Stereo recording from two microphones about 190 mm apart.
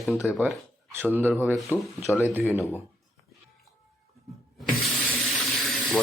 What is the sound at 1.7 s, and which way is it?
Speech, 15° left (ahead or behind).